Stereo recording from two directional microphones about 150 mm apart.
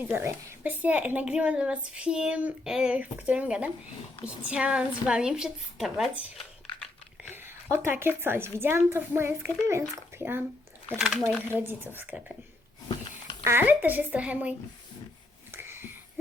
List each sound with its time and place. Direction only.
0.0 s a woman's voice: 15° right (ahead or behind)
7.9 s a woman's voice: 15° right (ahead or behind)
10.9 s a woman's voice: 5° right (ahead or behind)
11.2 s speech: 10° left (ahead or behind)
11.4 s a woman's voice: 15° right (ahead or behind)
13.4 s a woman's voice: 15° right (ahead or behind)
15.5 s wheeze: 15° right (ahead or behind)